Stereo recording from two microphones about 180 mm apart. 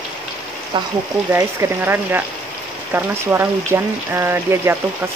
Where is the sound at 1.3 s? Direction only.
15° right (ahead or behind).